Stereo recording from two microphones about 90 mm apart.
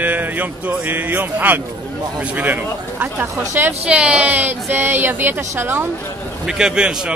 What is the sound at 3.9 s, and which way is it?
Speech, 10° right (ahead or behind).